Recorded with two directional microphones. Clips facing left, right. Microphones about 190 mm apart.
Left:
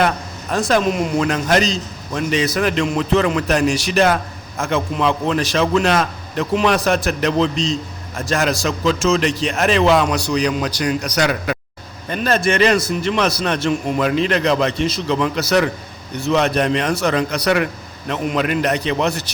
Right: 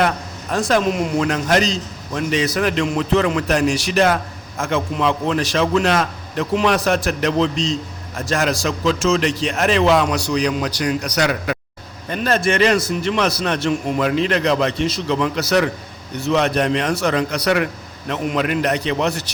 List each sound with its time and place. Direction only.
0.5 s a man's voice: 25° left (ahead or behind)